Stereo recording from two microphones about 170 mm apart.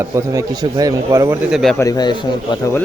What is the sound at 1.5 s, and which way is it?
Speech, centre (ahead or behind).